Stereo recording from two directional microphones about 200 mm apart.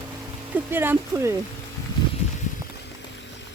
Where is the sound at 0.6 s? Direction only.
10° right (ahead or behind).